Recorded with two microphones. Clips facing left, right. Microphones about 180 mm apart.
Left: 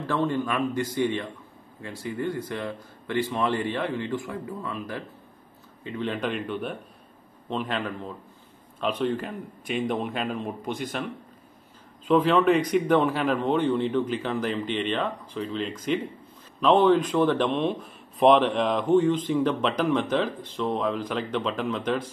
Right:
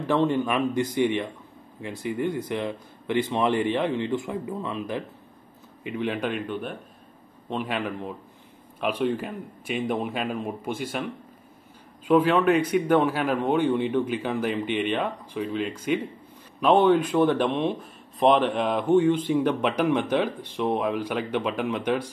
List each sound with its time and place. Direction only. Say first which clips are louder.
0.0 s a man's voice: right 3 dB; 20° right (ahead or behind)
12.1 s speech: even; 5° right (ahead or behind)